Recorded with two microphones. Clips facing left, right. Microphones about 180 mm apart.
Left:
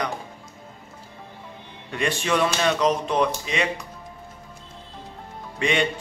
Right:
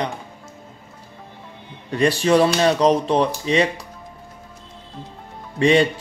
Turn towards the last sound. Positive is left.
turn(degrees=-35)  # may be behind; listen again after turning